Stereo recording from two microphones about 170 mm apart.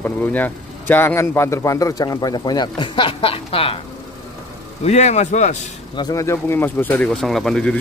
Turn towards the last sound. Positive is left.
turn(degrees=5)  # may be behind; listen again after turning